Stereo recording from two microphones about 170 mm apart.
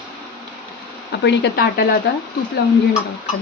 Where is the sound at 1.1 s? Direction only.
90° left; by 2.0 s 65° left (ahead or behind).